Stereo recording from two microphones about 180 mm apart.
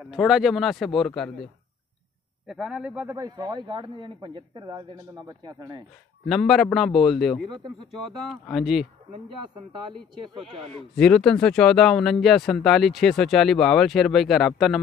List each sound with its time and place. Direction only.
0.0 s speech: centre (ahead or behind)
3.2 s a man's voice: 20° right (ahead or behind)
6.2 s speech: centre (ahead or behind)
11.0 s speech: 5° left (ahead or behind)